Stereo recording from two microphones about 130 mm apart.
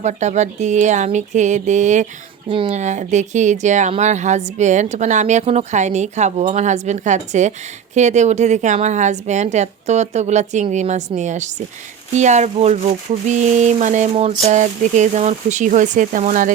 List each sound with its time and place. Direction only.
0.0 s a woman's voice: 65° right (ahead or behind); by 16.5 s 80° right